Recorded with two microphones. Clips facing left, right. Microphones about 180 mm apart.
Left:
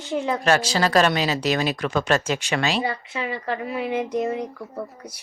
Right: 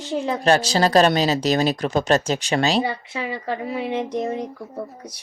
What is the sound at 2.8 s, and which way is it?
A woman's voice, 25° right (ahead or behind).